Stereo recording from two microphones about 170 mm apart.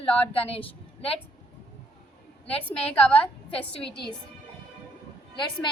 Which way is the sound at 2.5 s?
10° left (ahead or behind).